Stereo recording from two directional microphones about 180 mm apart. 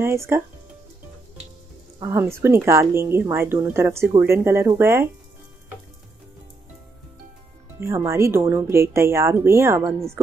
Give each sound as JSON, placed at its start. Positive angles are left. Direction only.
{"t": 0.0, "sound": "speech", "side_deg": -15}
{"t": 2.0, "sound": "speech", "side_deg": -15}
{"t": 7.8, "sound": "speech", "side_deg": -15}